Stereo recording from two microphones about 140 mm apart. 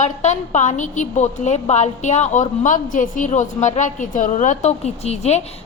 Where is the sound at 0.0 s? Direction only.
55° left (ahead or behind).